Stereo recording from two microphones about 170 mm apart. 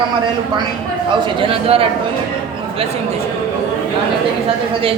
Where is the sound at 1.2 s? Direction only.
30° right (ahead or behind).